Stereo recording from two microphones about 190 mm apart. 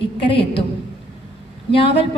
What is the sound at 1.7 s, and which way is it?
Speech, 30° left (ahead or behind).